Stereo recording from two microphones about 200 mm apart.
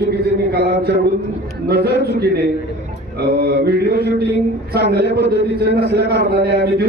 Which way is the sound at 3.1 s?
50° right (ahead or behind).